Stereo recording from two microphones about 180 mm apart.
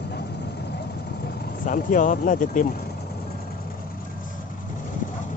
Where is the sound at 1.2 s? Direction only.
50° left (ahead or behind).